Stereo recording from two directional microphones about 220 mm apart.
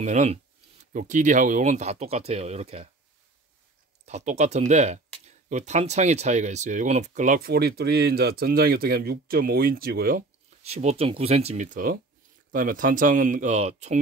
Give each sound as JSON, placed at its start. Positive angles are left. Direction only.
{"t": 0.0, "sound": "speech", "side_deg": -30}
{"t": 4.0, "sound": "speech", "side_deg": -30}
{"t": 10.6, "sound": "speech", "side_deg": -30}